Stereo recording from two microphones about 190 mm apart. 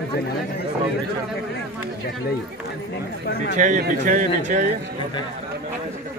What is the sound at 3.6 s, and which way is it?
Speech, 40° right (ahead or behind).